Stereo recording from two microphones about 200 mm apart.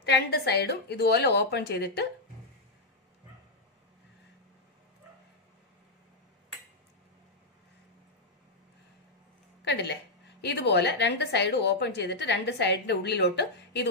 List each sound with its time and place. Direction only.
0.0 s a woman's voice: 55° left (ahead or behind)
9.7 s a woman's voice: 60° left (ahead or behind)